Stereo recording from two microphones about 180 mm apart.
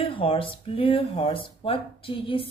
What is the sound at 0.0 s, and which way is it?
Speech, 30° left (ahead or behind).